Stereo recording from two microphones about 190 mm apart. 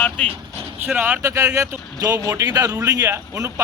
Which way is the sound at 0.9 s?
5° right (ahead or behind).